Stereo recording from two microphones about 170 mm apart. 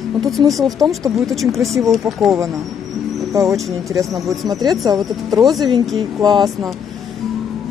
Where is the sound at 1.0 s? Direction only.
20° right (ahead or behind).